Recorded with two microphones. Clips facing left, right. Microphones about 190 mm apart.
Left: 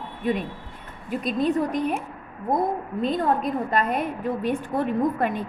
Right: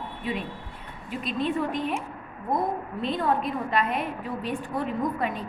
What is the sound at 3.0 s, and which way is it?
A woman's voice, 45° left (ahead or behind).